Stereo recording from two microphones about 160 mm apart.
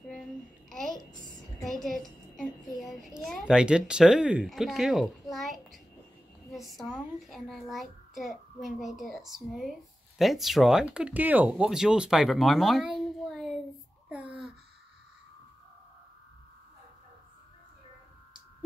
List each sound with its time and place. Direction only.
0.1 s babbling: 5° left (ahead or behind)
1.6 s a child's voice: centre (ahead or behind)
5.3 s a sound: centre (ahead or behind)
6.5 s a child's voice: centre (ahead or behind)